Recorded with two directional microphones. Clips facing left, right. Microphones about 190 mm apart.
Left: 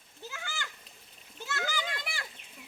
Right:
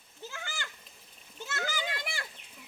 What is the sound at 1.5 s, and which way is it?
Children playing, 20° right (ahead or behind).